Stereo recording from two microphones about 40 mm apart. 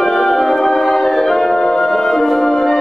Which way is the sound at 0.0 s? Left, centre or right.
Centre.